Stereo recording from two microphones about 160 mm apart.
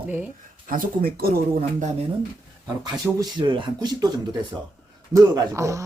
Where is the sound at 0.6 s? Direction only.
60° right (ahead or behind).